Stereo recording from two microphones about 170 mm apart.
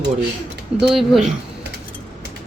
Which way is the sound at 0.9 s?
Centre (ahead or behind).